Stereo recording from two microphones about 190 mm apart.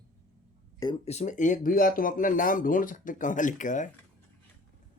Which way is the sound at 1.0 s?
35° left (ahead or behind).